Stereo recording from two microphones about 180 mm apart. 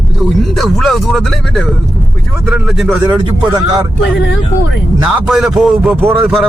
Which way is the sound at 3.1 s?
20° right (ahead or behind).